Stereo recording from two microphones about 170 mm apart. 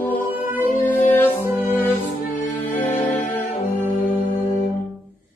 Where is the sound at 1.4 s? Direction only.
10° right (ahead or behind).